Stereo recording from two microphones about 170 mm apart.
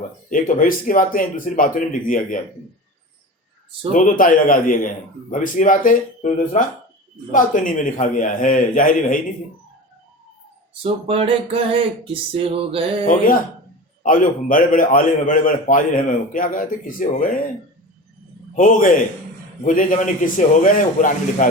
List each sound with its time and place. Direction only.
0.3 s a man's voice: 50° left (ahead or behind)
3.9 s a man's voice: 50° left (ahead or behind)
10.8 s a sound: 35° right (ahead or behind)
14.0 s a man's voice: 50° left (ahead or behind)
18.5 s a man's voice: 50° left (ahead or behind)